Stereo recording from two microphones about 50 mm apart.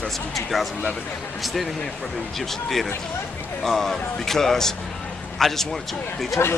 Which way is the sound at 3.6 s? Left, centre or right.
Centre.